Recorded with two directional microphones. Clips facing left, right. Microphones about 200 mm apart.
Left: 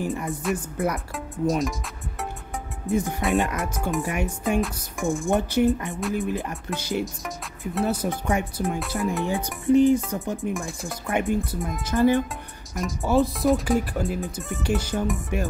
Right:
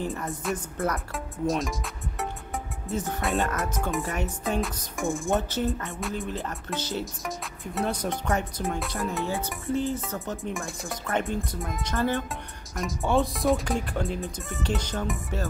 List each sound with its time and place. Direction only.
0.0 s speech: 15° left (ahead or behind)
0.4 s speech: centre (ahead or behind)
0.7 s speech: 15° left (ahead or behind)
1.1 s speech: centre (ahead or behind)
2.9 s speech: 10° left (ahead or behind)
4.6 s speech: centre (ahead or behind)
5.3 s speech: 15° left (ahead or behind)
9.2 s speech: 15° left (ahead or behind)
10.5 s speech: centre (ahead or behind)
11.1 s speech: 10° left (ahead or behind)